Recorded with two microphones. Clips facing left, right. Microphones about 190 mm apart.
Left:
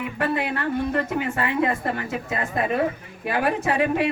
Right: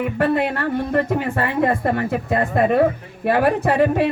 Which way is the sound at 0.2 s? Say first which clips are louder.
Right 5 dB; 55° right (ahead or behind).